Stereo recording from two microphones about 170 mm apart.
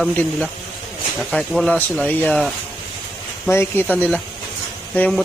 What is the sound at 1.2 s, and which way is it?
Speech, 5° left (ahead or behind).